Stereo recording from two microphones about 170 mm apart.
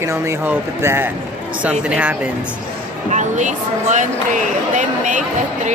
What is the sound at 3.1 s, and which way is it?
Speech, 45° right (ahead or behind).